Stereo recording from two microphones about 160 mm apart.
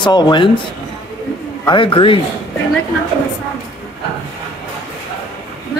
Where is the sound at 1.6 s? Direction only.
30° left (ahead or behind).